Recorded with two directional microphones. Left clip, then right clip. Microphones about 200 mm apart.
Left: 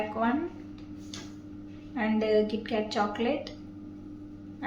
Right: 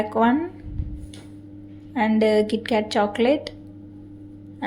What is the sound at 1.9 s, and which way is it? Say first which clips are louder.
A woman's voice: right 7 dB; 35° right (ahead or behind).